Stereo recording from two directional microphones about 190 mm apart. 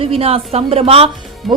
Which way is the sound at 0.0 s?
30° right (ahead or behind).